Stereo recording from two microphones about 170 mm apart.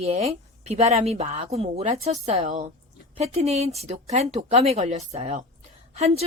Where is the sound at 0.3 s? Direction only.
40° right (ahead or behind).